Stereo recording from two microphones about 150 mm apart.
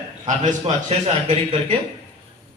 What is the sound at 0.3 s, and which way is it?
A man's voice, 50° right (ahead or behind).